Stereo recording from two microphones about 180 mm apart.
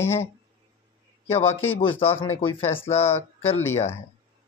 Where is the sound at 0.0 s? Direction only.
15° left (ahead or behind).